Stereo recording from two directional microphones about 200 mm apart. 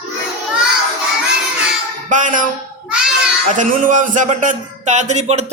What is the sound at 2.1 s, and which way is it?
Speech, 40° right (ahead or behind).